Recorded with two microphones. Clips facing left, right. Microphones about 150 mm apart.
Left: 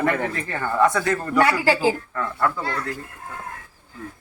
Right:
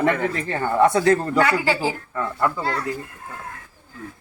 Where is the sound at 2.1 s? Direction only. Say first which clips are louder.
Right 1 dB; 15° right (ahead or behind).